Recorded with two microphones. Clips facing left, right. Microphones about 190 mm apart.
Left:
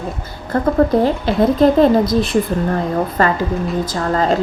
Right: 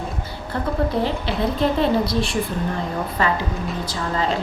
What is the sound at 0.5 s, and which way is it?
Speech, 45° left (ahead or behind).